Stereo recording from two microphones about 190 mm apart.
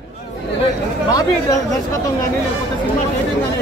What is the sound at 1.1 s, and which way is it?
Speech, 20° left (ahead or behind).